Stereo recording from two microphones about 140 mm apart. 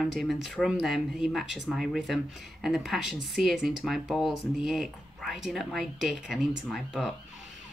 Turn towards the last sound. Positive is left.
turn(degrees=0)  # may be behind; listen again after turning